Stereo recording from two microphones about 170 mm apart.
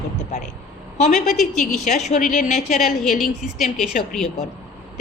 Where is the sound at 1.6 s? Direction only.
40° left (ahead or behind).